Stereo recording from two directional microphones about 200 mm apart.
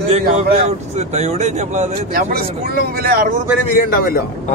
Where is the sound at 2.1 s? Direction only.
50° right (ahead or behind).